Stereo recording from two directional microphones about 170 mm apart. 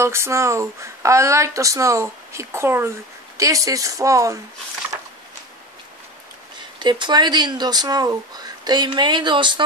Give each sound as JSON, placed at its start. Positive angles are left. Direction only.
{"t": 0.0, "sound": "speech", "side_deg": -15}
{"t": 6.8, "sound": "speech", "side_deg": -25}